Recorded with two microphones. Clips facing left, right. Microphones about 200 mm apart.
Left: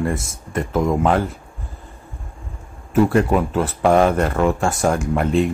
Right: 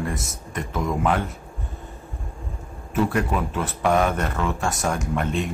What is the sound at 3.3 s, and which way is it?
Speech, 30° left (ahead or behind).